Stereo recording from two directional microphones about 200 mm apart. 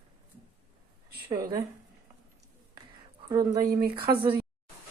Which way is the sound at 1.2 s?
20° right (ahead or behind).